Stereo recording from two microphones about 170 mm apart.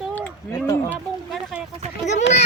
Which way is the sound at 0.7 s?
15° left (ahead or behind).